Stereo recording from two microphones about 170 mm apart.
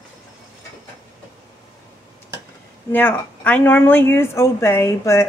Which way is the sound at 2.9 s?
10° left (ahead or behind).